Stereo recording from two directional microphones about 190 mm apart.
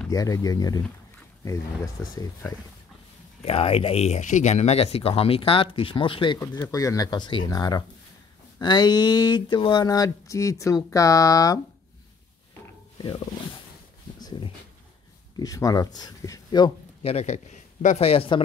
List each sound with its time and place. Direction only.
0.1 s a sound: 20° left (ahead or behind)
2.0 s speech: 10° left (ahead or behind)
3.4 s speech: 30° left (ahead or behind)
6.4 s a sound: 20° left (ahead or behind)
12.9 s wild animals: 20° left (ahead or behind)
15.3 s speech: 20° left (ahead or behind)